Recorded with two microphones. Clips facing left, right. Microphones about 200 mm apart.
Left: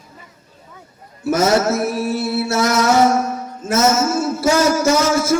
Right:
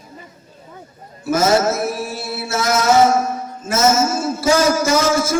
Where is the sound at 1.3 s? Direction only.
65° left (ahead or behind).